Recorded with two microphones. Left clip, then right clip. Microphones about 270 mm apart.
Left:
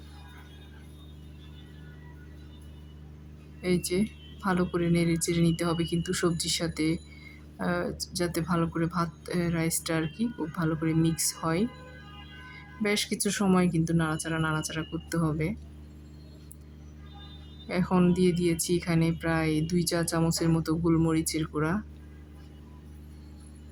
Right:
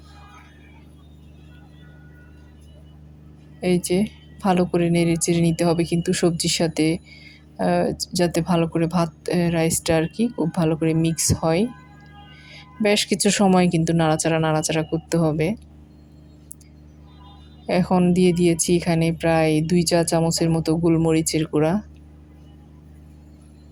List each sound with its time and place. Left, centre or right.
3.6 s a woman's voice: centre
17.7 s a woman's voice: centre